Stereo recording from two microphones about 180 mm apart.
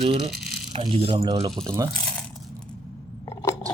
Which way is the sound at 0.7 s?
30° right (ahead or behind).